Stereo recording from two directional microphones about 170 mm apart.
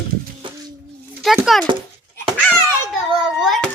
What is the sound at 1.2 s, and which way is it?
Speech, centre (ahead or behind).